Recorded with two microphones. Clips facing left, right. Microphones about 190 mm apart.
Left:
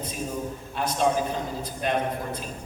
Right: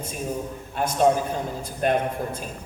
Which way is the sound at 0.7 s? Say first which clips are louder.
Right 4 dB; 50° right (ahead or behind).